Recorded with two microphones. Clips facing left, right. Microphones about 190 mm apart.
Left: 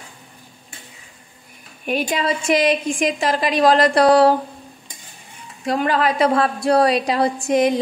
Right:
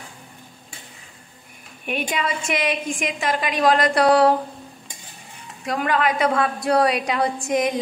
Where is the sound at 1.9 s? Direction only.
35° left (ahead or behind).